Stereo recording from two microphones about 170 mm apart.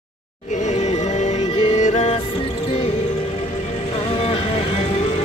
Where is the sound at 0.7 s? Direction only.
40° left (ahead or behind).